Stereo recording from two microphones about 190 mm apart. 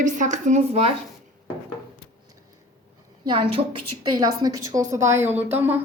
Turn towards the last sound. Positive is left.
turn(degrees=-10)  # may be behind; listen again after turning